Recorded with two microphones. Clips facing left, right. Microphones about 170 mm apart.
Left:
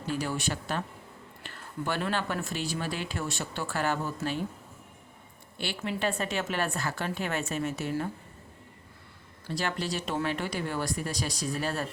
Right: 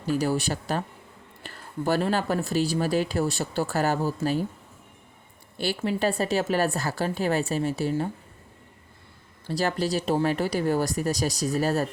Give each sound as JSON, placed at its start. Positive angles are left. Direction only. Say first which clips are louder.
{"t": 0.1, "sound": "speech", "louder": "right 7 dB", "side_deg": -35}
{"t": 5.5, "sound": "speech", "louder": "right 6 dB", "side_deg": -40}
{"t": 9.5, "sound": "speech", "louder": "right 6 dB", "side_deg": -35}